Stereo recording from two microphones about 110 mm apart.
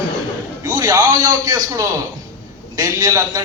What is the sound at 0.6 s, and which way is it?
A man's voice, 35° right (ahead or behind).